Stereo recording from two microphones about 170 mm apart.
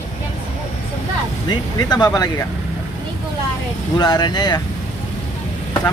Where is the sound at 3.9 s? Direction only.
25° left (ahead or behind).